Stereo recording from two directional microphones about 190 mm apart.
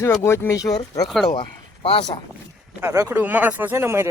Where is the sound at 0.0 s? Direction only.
15° left (ahead or behind).